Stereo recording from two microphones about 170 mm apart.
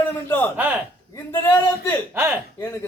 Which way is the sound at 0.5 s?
10° right (ahead or behind).